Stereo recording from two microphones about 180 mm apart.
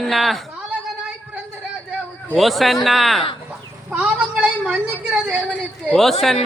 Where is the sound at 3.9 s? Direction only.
5° right (ahead or behind).